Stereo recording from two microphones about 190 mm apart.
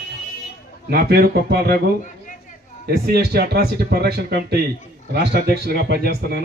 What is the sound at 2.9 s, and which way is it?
Speech, 55° right (ahead or behind).